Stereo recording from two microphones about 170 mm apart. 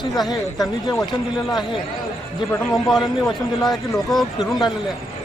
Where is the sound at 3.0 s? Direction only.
25° left (ahead or behind).